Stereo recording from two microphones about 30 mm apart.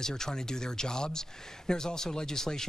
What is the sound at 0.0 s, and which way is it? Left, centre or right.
Speech, left.